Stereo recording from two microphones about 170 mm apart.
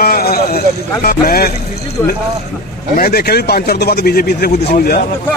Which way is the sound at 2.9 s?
65° left (ahead or behind).